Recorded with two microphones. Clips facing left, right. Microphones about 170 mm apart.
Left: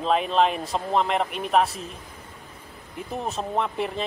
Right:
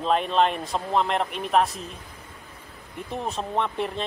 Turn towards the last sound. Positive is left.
turn(degrees=0)  # may be behind; listen again after turning